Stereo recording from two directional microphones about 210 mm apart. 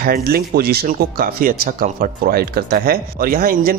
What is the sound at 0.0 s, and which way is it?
Speech, 45° right (ahead or behind).